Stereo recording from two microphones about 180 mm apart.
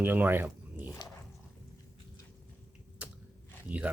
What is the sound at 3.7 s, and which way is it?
Zipper, 10° right (ahead or behind).